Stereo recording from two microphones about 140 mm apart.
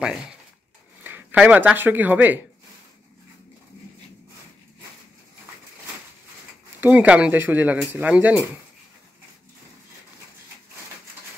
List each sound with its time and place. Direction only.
1.0 s speech: 10° right (ahead or behind)
6.8 s speech: 10° right (ahead or behind)